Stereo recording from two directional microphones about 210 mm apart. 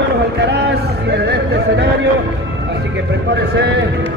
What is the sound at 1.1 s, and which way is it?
Music, 50° right (ahead or behind).